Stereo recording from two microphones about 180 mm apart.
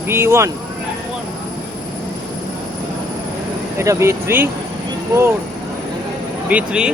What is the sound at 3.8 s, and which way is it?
Speech, 15° right (ahead or behind).